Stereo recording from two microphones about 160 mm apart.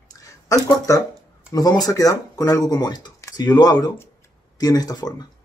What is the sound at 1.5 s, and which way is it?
Speech, 25° left (ahead or behind).